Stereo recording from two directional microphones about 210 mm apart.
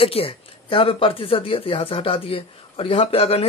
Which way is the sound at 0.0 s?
25° left (ahead or behind).